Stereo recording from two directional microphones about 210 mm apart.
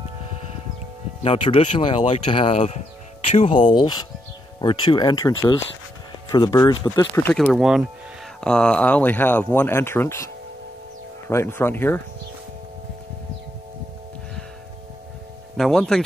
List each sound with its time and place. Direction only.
1.2 s speech: 25° left (ahead or behind)
7.2 s speech: 5° left (ahead or behind)
15.5 s speech: centre (ahead or behind)